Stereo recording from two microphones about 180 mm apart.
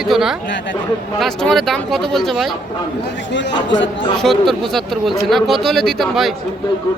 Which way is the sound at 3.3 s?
90° left.